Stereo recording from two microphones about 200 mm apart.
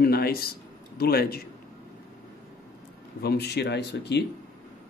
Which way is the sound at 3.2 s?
55° left (ahead or behind).